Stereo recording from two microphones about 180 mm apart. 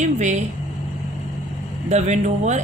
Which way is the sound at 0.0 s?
40° right (ahead or behind).